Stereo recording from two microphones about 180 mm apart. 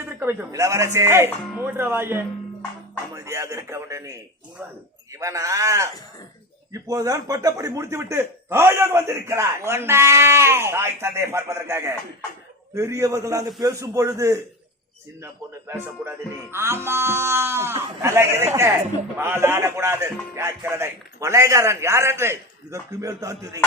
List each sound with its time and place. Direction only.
0.2 s speech: 10° right (ahead or behind)
5.2 s speech: 15° right (ahead or behind)